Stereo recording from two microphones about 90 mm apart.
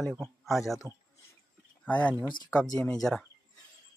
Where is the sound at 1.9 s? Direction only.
15° left (ahead or behind).